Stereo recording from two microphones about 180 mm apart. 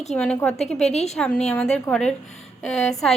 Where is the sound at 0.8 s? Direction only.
35° left (ahead or behind).